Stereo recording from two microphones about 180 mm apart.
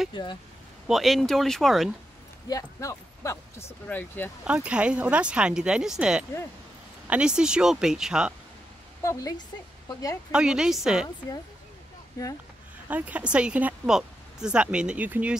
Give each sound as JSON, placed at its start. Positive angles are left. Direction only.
{"t": 0.1, "sound": "speech", "side_deg": 25}
{"t": 0.8, "sound": "speech", "side_deg": 0}
{"t": 2.4, "sound": "speech", "side_deg": 20}
{"t": 4.5, "sound": "speech", "side_deg": -5}
{"t": 9.0, "sound": "speech", "side_deg": 15}
{"t": 10.3, "sound": "speech", "side_deg": -5}
{"t": 12.2, "sound": "speech", "side_deg": 20}
{"t": 12.8, "sound": "speech", "side_deg": -10}